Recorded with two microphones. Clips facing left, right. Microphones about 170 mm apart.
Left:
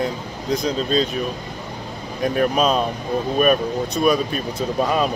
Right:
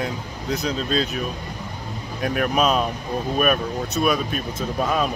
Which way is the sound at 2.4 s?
30° left (ahead or behind).